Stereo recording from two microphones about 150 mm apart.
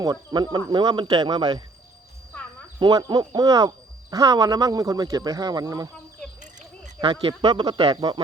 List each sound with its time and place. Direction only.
0.0 s speech: 25° right (ahead or behind)
2.7 s speech: 30° right (ahead or behind)
7.0 s speech: 35° right (ahead or behind)